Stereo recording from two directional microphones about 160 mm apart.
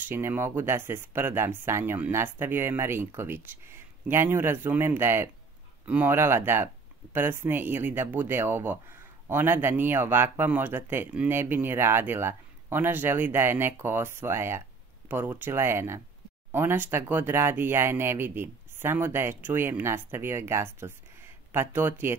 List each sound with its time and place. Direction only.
0.1 s speech: 15° right (ahead or behind)